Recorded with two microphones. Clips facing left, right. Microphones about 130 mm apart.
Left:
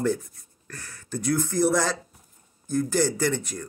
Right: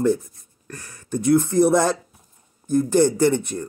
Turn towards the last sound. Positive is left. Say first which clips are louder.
# right 7 dB
turn(degrees=-20)  # may be behind; listen again after turning